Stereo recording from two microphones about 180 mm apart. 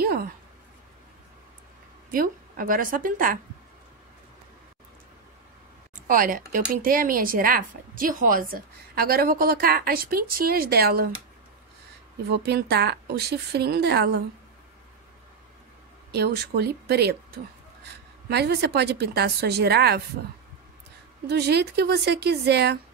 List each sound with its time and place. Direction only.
0.0 s a sound: 55° right (ahead or behind)
2.0 s speech: 50° right (ahead or behind)
6.0 s speech: 50° right (ahead or behind)
12.3 s a woman's voice: 65° right (ahead or behind)
16.1 s a woman's voice: 65° right (ahead or behind)
21.3 s a woman's voice: 65° right (ahead or behind)